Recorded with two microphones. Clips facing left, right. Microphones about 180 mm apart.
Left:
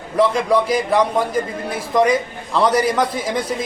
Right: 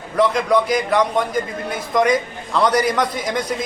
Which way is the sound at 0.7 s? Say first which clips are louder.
Left 1 dB; 30° left (ahead or behind).